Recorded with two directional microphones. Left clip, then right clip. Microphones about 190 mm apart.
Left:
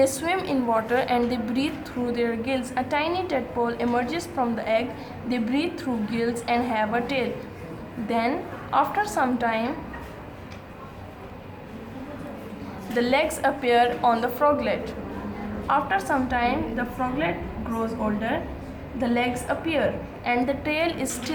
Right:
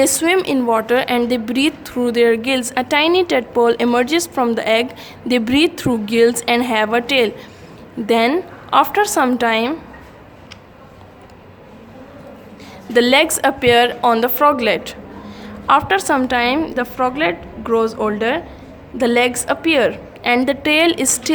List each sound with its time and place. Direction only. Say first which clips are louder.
0.0 s a woman's voice: right 8 dB; 55° right (ahead or behind)
12.9 s a woman's voice: right 10 dB; 55° right (ahead or behind)